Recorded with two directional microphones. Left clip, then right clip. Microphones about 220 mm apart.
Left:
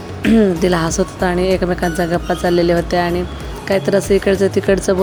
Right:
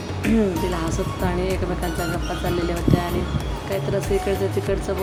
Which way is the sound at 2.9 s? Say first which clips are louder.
Left 6 dB; 30° left (ahead or behind).